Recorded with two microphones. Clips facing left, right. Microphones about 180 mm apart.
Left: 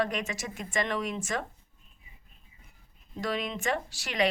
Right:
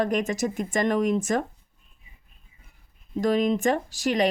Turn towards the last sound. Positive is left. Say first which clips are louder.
# right 6 dB
turn(degrees=-40)  # may be behind; listen again after turning